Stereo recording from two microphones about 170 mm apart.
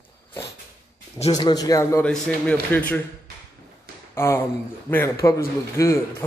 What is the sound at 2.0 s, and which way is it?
Speech, 5° left (ahead or behind).